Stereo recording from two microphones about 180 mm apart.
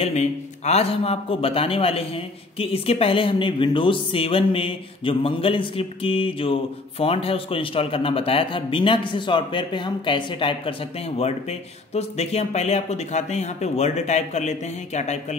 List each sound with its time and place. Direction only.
0.0 s a man's voice: 40° left (ahead or behind)